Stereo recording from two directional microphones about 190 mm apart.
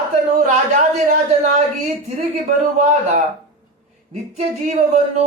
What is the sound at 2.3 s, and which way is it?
Speech, 40° right (ahead or behind).